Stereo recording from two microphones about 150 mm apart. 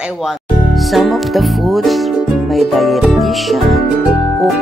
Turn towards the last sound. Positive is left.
turn(degrees=0)  # may be behind; listen again after turning